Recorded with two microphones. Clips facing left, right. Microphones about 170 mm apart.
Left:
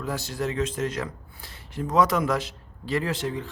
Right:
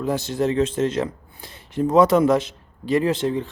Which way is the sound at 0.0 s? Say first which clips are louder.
Right 7 dB; 20° right (ahead or behind).